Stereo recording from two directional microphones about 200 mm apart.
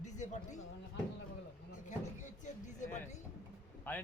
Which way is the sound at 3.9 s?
10° left (ahead or behind).